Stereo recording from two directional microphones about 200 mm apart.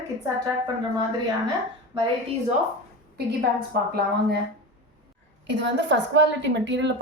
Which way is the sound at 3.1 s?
55° right (ahead or behind).